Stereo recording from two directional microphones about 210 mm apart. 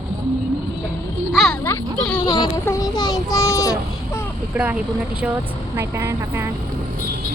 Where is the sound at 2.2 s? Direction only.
20° left (ahead or behind).